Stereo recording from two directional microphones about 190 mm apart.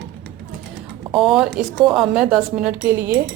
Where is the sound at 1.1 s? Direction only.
Centre (ahead or behind).